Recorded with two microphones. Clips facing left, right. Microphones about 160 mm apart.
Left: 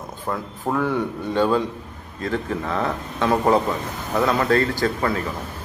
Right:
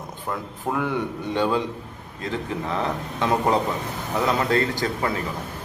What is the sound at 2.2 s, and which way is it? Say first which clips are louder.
A man's voice: left 3 dB; 20° right (ahead or behind).